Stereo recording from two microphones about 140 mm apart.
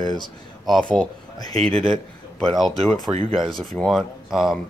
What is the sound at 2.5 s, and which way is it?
Speech, 5° left (ahead or behind).